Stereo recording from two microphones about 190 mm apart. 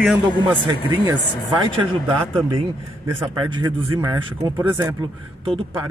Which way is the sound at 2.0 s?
25° right (ahead or behind).